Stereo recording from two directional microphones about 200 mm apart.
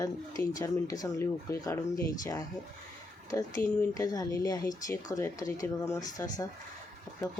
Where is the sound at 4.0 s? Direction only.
20° left (ahead or behind).